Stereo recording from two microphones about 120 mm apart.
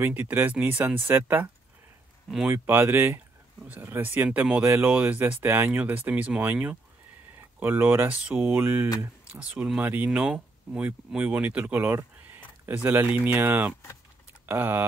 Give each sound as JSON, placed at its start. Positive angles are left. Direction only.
{"t": 0.0, "sound": "speech", "side_deg": -15}
{"t": 2.5, "sound": "speech", "side_deg": -20}